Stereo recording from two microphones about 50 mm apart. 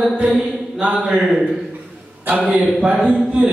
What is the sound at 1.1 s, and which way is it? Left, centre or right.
Speech, centre.